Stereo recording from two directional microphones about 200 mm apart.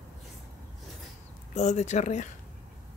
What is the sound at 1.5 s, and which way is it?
Speech, 35° left (ahead or behind).